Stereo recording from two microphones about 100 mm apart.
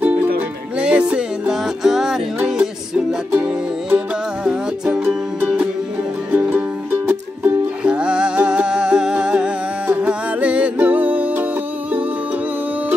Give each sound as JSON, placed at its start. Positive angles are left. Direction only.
{"t": 0.0, "sound": "music", "side_deg": -15}
{"t": 3.3, "sound": "music", "side_deg": -15}
{"t": 6.3, "sound": "music", "side_deg": -20}
{"t": 7.8, "sound": "music", "side_deg": -10}